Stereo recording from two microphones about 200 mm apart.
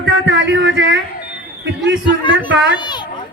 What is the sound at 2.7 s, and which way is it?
Children playing, 20° left (ahead or behind).